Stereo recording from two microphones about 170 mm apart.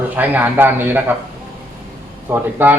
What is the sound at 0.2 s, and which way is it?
Speech, 10° right (ahead or behind).